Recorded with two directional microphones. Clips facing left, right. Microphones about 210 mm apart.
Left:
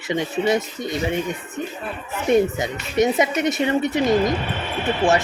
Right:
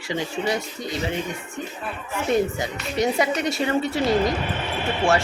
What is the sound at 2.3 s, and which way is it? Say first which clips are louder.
A woman's voice: left 5 dB; 20° left (ahead or behind).